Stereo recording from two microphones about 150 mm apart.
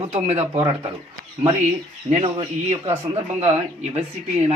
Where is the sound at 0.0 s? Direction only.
45° right (ahead or behind).